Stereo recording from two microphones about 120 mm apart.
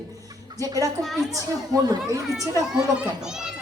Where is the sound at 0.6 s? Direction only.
30° right (ahead or behind).